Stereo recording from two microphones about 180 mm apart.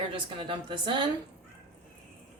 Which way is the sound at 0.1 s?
30° right (ahead or behind).